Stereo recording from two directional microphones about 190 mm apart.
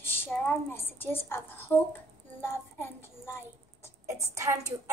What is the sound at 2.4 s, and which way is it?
Music, 10° left (ahead or behind).